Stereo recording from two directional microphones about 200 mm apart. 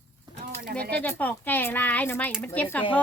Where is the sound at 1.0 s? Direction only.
10° left (ahead or behind).